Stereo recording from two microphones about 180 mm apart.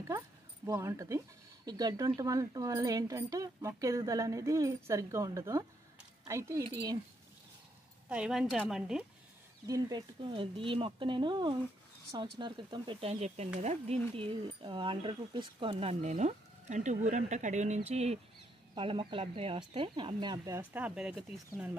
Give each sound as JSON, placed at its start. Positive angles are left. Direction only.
{"t": 0.7, "sound": "speech", "side_deg": -15}
{"t": 8.1, "sound": "a woman's voice", "side_deg": -5}
{"t": 9.7, "sound": "speech", "side_deg": -20}